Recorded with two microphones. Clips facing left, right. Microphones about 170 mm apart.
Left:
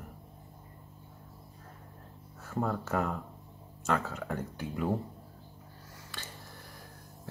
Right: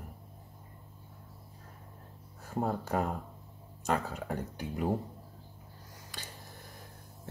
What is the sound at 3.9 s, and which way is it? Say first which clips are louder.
Speech: even; 15° right (ahead or behind).